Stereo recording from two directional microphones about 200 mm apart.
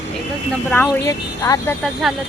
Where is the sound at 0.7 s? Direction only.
10° left (ahead or behind).